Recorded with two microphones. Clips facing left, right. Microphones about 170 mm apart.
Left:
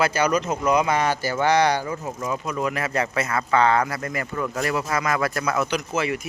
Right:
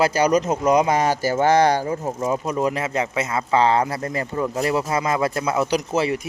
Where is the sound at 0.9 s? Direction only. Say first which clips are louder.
Right 3 dB; 40° right (ahead or behind).